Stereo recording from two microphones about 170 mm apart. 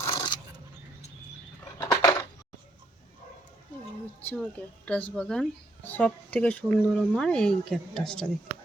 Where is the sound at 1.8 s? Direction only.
15° left (ahead or behind).